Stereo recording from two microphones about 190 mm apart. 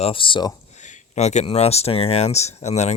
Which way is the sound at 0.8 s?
35° left (ahead or behind).